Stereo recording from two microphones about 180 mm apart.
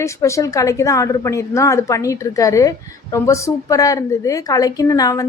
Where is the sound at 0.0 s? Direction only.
15° left (ahead or behind).